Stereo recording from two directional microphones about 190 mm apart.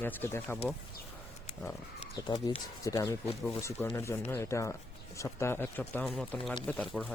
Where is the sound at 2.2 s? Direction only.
25° left (ahead or behind).